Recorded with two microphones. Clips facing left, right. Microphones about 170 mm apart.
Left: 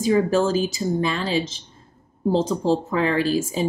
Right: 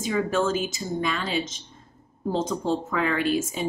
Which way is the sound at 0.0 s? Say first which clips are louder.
Left 5 dB; 35° left (ahead or behind).